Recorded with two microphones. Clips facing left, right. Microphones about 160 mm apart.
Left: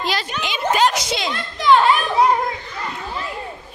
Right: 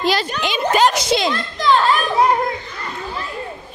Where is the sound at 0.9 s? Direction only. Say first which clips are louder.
Right 5 dB; 35° right (ahead or behind).